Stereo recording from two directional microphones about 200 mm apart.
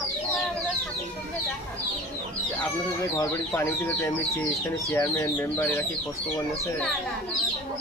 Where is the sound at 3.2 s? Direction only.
15° left (ahead or behind).